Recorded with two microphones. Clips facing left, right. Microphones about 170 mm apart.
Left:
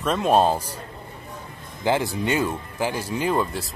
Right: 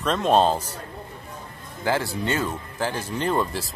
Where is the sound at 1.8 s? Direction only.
15° left (ahead or behind); by 3.7 s centre (ahead or behind).